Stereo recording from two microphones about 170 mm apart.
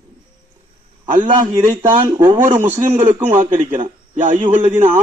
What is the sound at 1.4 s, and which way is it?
A man's voice, 15° right (ahead or behind).